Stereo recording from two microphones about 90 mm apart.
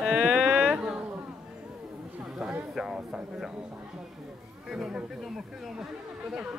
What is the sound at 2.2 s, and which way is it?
Speech, 5° right (ahead or behind).